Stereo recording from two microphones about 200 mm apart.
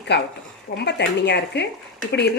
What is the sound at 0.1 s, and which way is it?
Speech, 55° left (ahead or behind).